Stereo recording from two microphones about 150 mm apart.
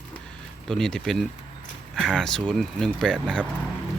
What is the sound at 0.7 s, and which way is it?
Speech, 5° left (ahead or behind).